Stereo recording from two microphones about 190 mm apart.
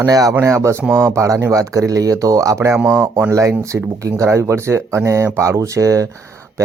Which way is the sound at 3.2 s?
15° right (ahead or behind).